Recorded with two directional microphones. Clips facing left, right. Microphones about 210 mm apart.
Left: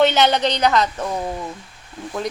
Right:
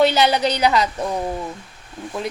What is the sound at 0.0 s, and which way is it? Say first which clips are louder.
Speech: even; 5° right (ahead or behind).